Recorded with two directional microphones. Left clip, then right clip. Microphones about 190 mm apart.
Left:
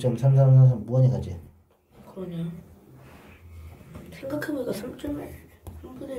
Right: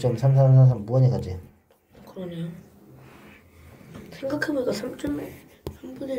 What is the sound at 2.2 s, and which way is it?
Speech, 20° right (ahead or behind).